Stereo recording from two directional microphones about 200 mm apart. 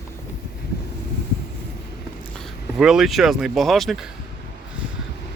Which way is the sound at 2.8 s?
Centre (ahead or behind).